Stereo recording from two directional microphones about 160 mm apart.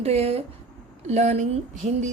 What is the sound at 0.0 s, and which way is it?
Speech, 40° right (ahead or behind).